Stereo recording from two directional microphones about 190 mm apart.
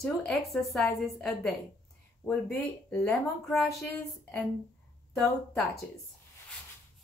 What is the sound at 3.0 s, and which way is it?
Speech, centre (ahead or behind).